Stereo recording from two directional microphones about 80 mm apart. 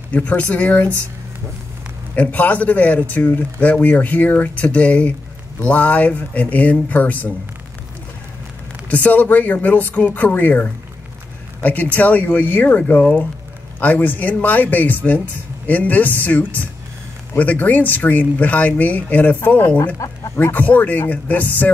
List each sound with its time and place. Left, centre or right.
0.1 s speech: centre
2.1 s speech: centre
8.8 s speech: centre
20.0 s speech: left
20.3 s speech: left